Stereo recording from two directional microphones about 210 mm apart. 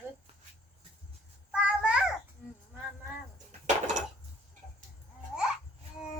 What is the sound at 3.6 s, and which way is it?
Dishes, 35° right (ahead or behind).